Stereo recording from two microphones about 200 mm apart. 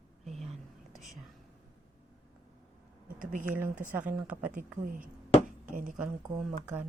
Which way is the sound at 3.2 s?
40° right (ahead or behind).